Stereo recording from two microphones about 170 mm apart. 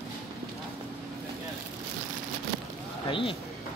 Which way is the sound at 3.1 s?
30° left (ahead or behind).